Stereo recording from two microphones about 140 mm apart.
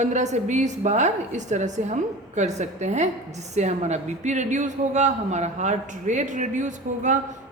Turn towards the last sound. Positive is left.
turn(degrees=-60)  # may be behind; listen again after turning